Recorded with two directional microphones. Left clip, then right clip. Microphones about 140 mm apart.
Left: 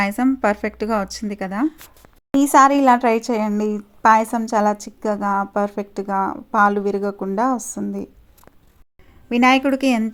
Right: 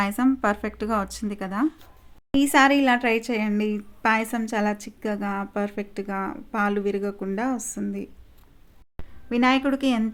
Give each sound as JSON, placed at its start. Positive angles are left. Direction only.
{"t": 0.0, "sound": "a woman's voice", "side_deg": 20}
{"t": 9.3, "sound": "a woman's voice", "side_deg": 30}